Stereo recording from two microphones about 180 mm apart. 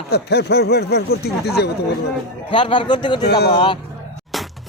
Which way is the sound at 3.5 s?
25° left (ahead or behind).